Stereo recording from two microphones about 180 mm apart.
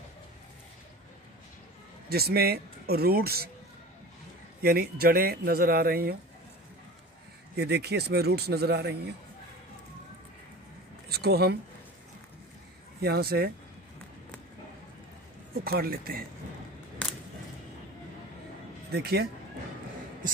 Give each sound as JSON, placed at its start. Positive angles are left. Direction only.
{"t": 2.0, "sound": "speech", "side_deg": -60}
{"t": 4.6, "sound": "speech", "side_deg": -60}
{"t": 7.5, "sound": "speech", "side_deg": -65}
{"t": 11.1, "sound": "speech", "side_deg": -60}
{"t": 13.0, "sound": "speech", "side_deg": -60}
{"t": 15.6, "sound": "speech", "side_deg": -55}
{"t": 18.9, "sound": "speech", "side_deg": -60}